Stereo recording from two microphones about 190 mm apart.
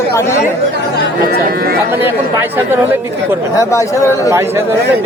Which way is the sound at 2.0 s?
10° right (ahead or behind).